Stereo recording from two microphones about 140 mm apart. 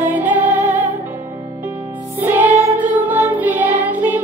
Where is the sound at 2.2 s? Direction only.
15° right (ahead or behind).